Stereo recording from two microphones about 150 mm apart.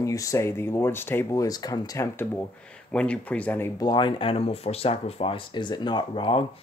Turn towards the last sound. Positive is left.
turn(degrees=35)  # may be behind; listen again after turning